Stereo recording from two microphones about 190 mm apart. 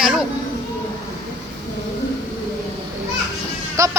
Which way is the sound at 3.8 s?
15° right (ahead or behind).